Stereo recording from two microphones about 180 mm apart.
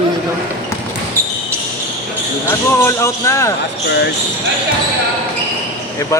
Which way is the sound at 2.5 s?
15° left (ahead or behind).